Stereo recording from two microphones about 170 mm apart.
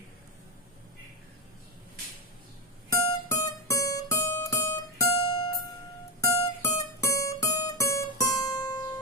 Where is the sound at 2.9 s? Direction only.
20° left (ahead or behind).